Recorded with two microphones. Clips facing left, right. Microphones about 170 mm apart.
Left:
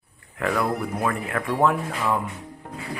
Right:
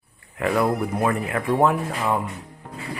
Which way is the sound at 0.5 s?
20° right (ahead or behind).